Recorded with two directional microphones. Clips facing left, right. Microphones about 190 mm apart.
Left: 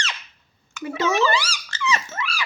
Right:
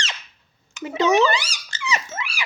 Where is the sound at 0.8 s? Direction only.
20° right (ahead or behind).